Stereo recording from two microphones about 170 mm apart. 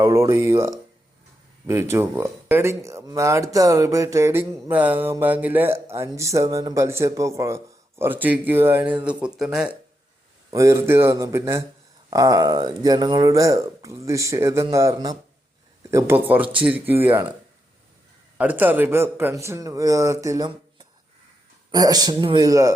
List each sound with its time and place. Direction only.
0.0 s speech: 15° right (ahead or behind)
10.5 s speech: 20° right (ahead or behind)
18.3 s speech: 10° right (ahead or behind)